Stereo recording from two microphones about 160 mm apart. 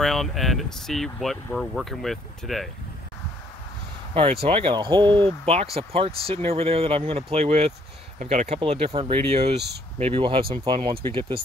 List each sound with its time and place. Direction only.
0.0 s speech: centre (ahead or behind)
4.1 s speech: 35° right (ahead or behind)
5.4 s speech: 40° right (ahead or behind)